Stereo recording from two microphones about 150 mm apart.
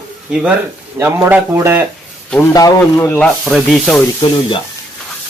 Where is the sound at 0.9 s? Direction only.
15° right (ahead or behind).